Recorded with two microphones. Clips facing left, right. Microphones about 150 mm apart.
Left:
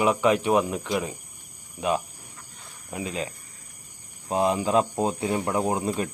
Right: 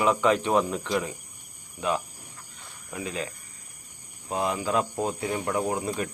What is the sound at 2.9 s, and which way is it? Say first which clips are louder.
Speech: left 2 dB; 20° left (ahead or behind).